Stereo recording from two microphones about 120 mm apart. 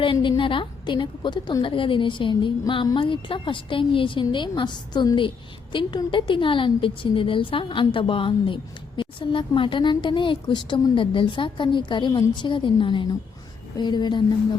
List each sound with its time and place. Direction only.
0.0 s a woman's voice: 45° left (ahead or behind)